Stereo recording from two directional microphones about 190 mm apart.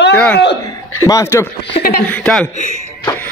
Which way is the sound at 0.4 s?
65° left (ahead or behind).